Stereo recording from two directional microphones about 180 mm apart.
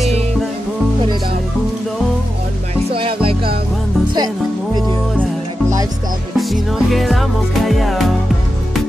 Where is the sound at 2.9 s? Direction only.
30° right (ahead or behind).